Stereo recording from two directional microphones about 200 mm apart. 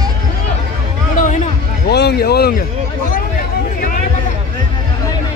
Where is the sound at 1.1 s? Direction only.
40° left (ahead or behind).